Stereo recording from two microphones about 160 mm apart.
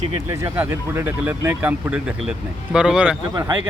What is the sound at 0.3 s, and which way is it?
Speech, 15° right (ahead or behind).